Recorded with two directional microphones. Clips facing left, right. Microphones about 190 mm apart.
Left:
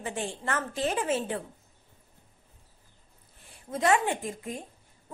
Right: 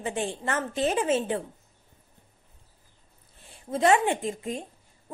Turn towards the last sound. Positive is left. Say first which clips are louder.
# right 4 dB
turn(degrees=-25)  # may be behind; listen again after turning